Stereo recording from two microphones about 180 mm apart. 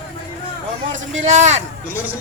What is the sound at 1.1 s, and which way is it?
Speech, 40° right (ahead or behind).